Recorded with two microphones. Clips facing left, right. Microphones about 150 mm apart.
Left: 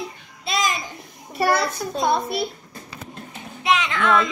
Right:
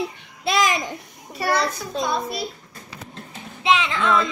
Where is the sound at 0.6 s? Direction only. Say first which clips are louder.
Right 3 dB; 65° right (ahead or behind).